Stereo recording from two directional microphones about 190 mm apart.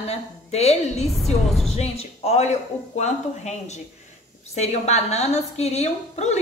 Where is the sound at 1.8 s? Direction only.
35° left (ahead or behind).